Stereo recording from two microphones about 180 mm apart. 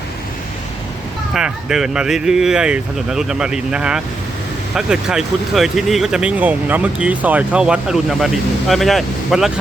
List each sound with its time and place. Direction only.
1.3 s speech: 5° right (ahead or behind)